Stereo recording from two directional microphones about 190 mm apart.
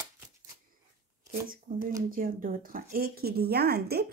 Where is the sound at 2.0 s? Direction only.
50° right (ahead or behind).